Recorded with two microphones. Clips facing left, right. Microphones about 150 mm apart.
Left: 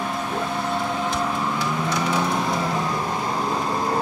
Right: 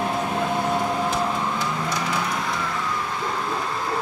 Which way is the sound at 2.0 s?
20° left (ahead or behind).